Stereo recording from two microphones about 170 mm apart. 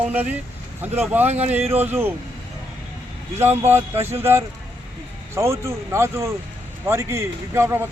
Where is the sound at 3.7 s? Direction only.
15° right (ahead or behind).